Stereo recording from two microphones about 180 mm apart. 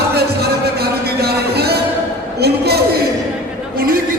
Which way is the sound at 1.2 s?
60° right (ahead or behind).